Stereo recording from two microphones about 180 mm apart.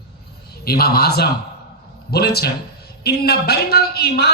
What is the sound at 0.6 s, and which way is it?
A man's voice, 60° left (ahead or behind).